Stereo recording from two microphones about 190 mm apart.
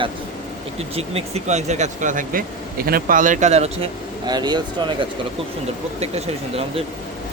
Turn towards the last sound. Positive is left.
turn(degrees=-30)  # may be behind; listen again after turning